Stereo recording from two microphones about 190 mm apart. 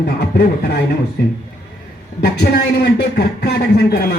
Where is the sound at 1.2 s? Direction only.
65° left (ahead or behind).